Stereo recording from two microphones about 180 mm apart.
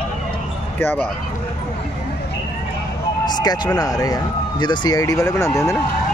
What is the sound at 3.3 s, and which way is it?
Speech, 25° left (ahead or behind).